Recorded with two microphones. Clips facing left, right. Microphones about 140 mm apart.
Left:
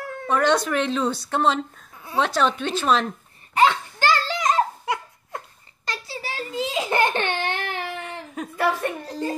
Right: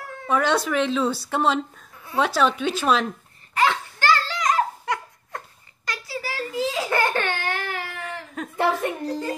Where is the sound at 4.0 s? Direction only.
20° left (ahead or behind).